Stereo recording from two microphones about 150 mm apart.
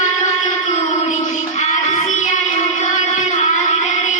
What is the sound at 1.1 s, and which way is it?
Child singing, 50° left (ahead or behind).